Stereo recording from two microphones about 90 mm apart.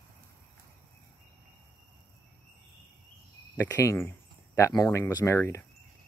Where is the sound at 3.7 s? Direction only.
30° left (ahead or behind).